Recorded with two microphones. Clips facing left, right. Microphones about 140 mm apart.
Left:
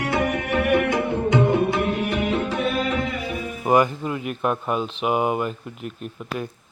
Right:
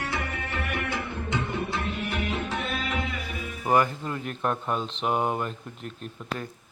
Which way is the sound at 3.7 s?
15° left (ahead or behind).